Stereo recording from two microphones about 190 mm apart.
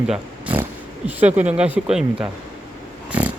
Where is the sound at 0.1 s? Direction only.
10° right (ahead or behind).